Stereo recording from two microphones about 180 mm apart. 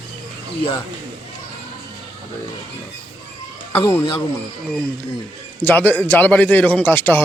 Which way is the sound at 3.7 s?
15° left (ahead or behind).